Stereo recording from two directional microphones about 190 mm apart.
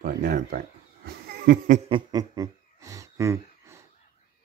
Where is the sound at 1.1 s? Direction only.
55° right (ahead or behind).